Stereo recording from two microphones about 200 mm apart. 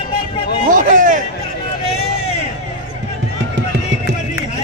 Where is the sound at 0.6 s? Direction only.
40° right (ahead or behind).